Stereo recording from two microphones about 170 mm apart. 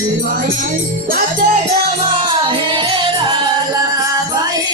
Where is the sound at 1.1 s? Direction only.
50° right (ahead or behind).